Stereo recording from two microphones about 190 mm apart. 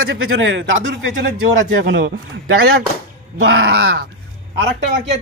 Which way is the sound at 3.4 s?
75° right (ahead or behind).